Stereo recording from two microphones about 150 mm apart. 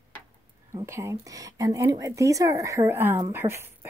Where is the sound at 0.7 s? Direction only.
20° right (ahead or behind).